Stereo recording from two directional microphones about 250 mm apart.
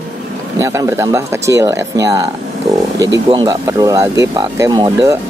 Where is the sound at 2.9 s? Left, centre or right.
Right.